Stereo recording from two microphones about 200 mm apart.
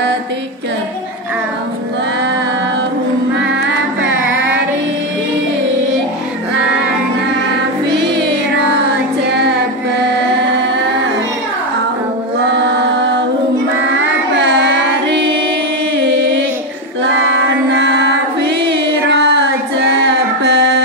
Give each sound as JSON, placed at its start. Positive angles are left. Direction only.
{"t": 9.2, "sound": "music", "side_deg": -55}
{"t": 12.5, "sound": "music", "side_deg": -60}
{"t": 17.6, "sound": "music", "side_deg": -60}